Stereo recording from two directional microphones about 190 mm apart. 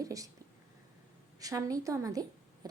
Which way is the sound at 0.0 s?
15° right (ahead or behind).